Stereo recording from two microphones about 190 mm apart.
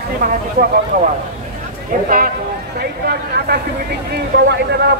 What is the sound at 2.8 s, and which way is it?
A man's voice, 60° right (ahead or behind).